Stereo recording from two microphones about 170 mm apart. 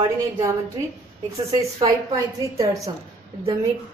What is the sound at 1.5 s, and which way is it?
A woman's voice, 20° right (ahead or behind).